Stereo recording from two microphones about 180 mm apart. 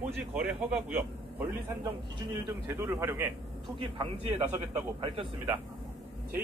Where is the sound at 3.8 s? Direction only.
30° right (ahead or behind).